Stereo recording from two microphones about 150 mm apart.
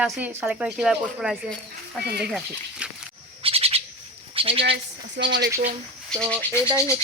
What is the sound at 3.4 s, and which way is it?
Bird, 40° right (ahead or behind).